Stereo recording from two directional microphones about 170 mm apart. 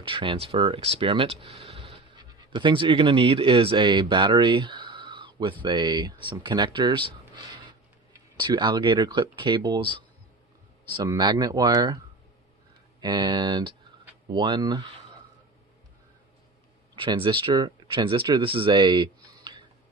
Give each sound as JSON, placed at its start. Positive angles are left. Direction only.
{"t": 0.0, "sound": "speech", "side_deg": -30}
{"t": 11.1, "sound": "speech", "side_deg": -25}
{"t": 13.0, "sound": "speech", "side_deg": -25}
{"t": 16.9, "sound": "speech", "side_deg": -30}